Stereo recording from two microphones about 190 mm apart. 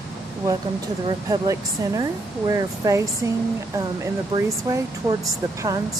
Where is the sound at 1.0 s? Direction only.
20° right (ahead or behind).